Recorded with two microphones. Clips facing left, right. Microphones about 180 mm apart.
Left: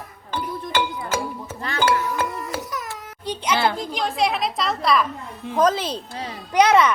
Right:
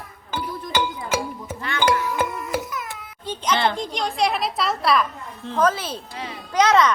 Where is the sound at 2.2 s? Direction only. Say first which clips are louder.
Right 2 dB; 35° left (ahead or behind).